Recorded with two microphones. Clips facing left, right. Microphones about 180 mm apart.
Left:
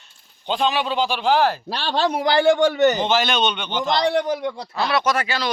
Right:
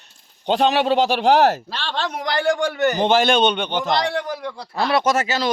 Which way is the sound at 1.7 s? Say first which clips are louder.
Left 5 dB; 35° left (ahead or behind).